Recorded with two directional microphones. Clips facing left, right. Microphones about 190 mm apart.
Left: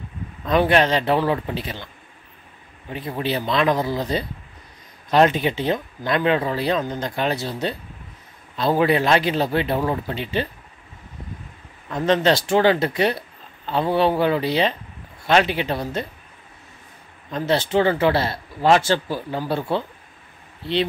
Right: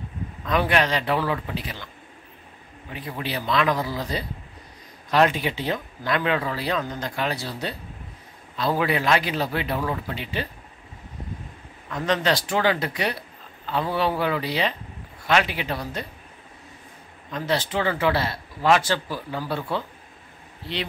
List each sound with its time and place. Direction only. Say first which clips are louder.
0.5 s speech: left 5 dB; 30° left (ahead or behind)
2.9 s speech: left 6 dB; 30° left (ahead or behind)
11.9 s speech: left 5 dB; 25° left (ahead or behind)
17.3 s speech: left 5 dB; 25° left (ahead or behind)